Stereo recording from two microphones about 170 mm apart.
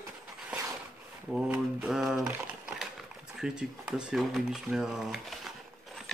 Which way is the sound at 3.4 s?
5° right (ahead or behind).